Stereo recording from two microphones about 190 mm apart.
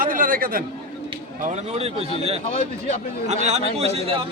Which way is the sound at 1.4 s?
40° right (ahead or behind).